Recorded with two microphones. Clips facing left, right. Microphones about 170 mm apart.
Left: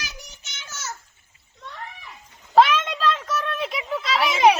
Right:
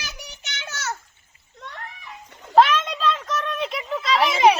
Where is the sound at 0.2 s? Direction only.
65° right (ahead or behind).